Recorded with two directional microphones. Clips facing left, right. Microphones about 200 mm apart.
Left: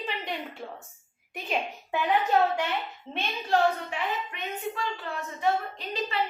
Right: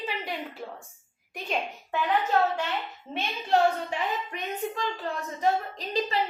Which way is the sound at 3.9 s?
40° right (ahead or behind).